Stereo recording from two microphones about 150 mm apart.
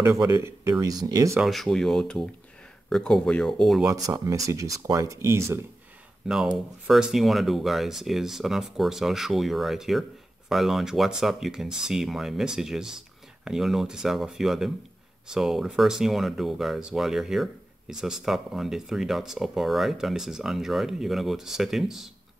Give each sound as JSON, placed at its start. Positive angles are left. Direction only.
{"t": 0.0, "sound": "speech", "side_deg": -20}
{"t": 1.4, "sound": "speech", "side_deg": 0}
{"t": 3.8, "sound": "speech", "side_deg": -20}
{"t": 6.2, "sound": "speech", "side_deg": -5}